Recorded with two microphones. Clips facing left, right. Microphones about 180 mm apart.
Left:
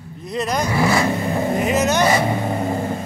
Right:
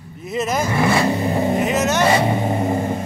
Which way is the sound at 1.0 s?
15° right (ahead or behind).